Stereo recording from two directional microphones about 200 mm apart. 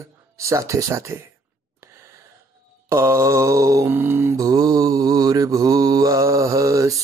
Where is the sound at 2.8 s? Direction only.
15° right (ahead or behind).